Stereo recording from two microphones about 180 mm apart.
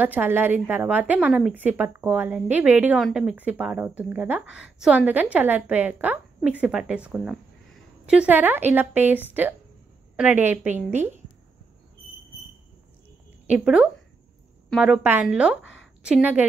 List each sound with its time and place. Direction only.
0.0 s a woman's voice: 10° right (ahead or behind)
13.5 s a woman's voice: 5° right (ahead or behind)
15.6 s a sound: 90° left
16.0 s a woman's voice: 5° right (ahead or behind)